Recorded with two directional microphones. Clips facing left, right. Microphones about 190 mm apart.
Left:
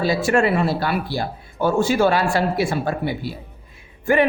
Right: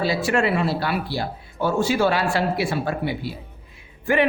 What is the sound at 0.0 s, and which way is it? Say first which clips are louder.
A man's voice: left 3 dB; 45° left (ahead or behind).